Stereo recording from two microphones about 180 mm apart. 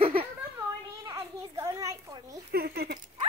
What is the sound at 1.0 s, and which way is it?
Children playing, 20° right (ahead or behind).